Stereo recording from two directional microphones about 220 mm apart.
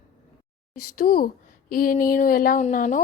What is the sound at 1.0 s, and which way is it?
A woman's voice, 40° left (ahead or behind).